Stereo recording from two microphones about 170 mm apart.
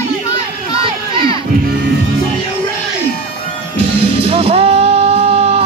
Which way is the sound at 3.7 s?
35° right (ahead or behind).